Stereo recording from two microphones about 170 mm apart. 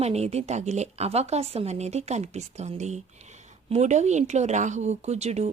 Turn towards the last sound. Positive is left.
turn(degrees=-40)  # may be behind; listen again after turning